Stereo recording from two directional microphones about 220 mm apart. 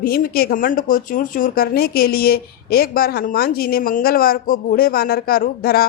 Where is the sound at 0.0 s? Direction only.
45° left (ahead or behind).